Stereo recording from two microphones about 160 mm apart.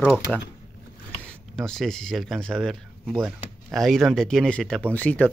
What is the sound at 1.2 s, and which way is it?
Speech, 5° left (ahead or behind).